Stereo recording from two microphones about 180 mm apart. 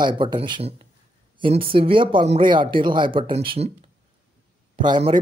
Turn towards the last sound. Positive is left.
turn(degrees=-30)  # may be behind; listen again after turning